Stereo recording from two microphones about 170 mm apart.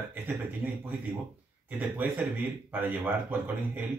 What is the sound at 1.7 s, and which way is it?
Speech, 10° right (ahead or behind).